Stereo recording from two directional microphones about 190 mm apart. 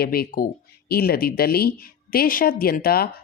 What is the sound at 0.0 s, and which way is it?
Speech, 55° left (ahead or behind).